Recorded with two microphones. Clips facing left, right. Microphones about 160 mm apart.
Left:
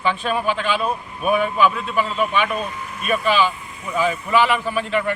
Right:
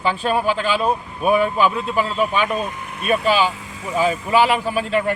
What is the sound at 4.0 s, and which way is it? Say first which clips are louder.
Speech: right 2 dB; 35° right (ahead or behind).